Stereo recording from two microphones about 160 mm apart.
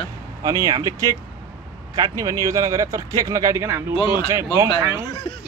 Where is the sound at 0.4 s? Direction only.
20° right (ahead or behind).